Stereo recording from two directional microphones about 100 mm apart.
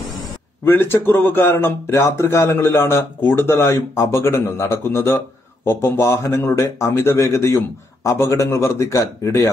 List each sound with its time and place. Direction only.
0.7 s a man's voice: 20° left (ahead or behind)